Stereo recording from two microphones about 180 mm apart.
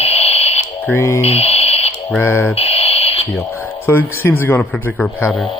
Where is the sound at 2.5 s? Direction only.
35° left (ahead or behind).